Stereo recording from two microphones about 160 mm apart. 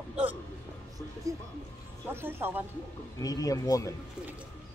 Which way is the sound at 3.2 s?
20° left (ahead or behind).